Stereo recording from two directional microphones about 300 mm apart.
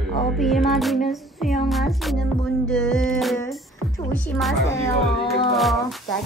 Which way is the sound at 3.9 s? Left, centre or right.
Centre.